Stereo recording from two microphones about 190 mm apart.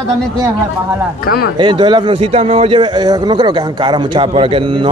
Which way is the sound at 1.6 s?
25° right (ahead or behind).